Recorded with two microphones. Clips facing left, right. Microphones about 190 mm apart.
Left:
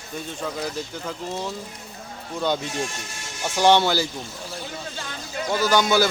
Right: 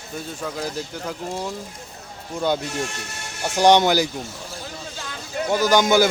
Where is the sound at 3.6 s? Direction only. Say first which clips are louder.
Right 3 dB; 15° right (ahead or behind).